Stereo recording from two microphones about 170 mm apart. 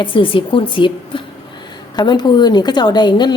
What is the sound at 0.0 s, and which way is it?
A woman's voice, 30° left (ahead or behind).